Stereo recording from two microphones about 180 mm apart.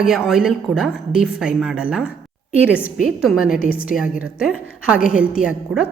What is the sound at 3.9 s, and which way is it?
A woman's voice, 5° right (ahead or behind).